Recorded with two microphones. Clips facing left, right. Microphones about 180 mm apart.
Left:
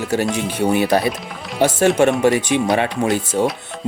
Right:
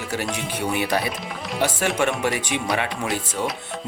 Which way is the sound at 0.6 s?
40° left (ahead or behind).